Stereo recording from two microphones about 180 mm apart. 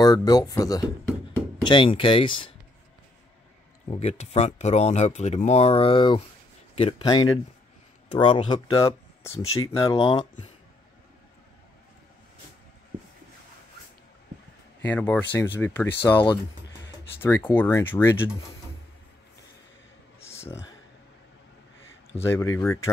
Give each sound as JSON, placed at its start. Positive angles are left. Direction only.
{"t": 0.0, "sound": "speech", "side_deg": 20}
{"t": 3.9, "sound": "speech", "side_deg": 35}
{"t": 14.9, "sound": "speech", "side_deg": 10}
{"t": 17.2, "sound": "speech", "side_deg": 10}
{"t": 22.2, "sound": "speech", "side_deg": 15}